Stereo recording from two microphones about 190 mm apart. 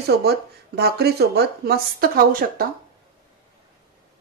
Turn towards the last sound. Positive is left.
turn(degrees=-50)  # may be behind; listen again after turning